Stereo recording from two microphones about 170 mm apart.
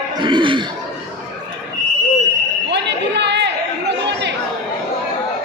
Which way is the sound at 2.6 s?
90° right.